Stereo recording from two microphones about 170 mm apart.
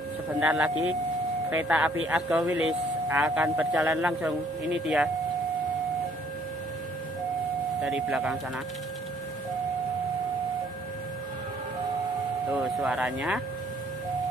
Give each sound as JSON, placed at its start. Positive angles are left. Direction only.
{"t": 0.3, "sound": "speech", "side_deg": -10}
{"t": 7.8, "sound": "speech", "side_deg": -5}
{"t": 12.5, "sound": "speech", "side_deg": -5}